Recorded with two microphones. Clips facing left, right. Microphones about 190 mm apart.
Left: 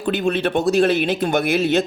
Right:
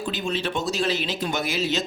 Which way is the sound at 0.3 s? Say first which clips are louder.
Left 8 dB; 55° left (ahead or behind).